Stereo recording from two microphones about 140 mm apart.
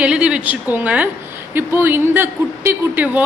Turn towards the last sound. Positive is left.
turn(degrees=-10)  # may be behind; listen again after turning